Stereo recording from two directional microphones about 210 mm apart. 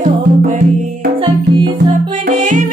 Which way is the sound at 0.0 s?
35° right (ahead or behind).